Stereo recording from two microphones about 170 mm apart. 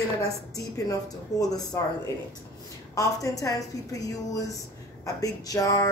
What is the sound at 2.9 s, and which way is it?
Speech, 20° left (ahead or behind).